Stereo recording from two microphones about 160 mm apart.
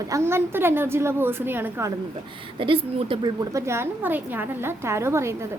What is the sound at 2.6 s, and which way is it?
A woman's voice, 35° right (ahead or behind).